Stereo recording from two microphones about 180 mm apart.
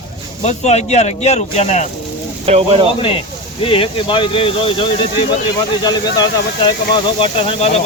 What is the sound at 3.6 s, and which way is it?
Speech, 30° left (ahead or behind).